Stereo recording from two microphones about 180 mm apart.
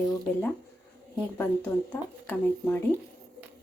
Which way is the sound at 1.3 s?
10° left (ahead or behind).